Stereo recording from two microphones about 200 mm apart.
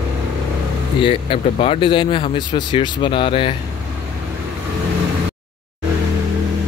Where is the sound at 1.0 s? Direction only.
30° left (ahead or behind).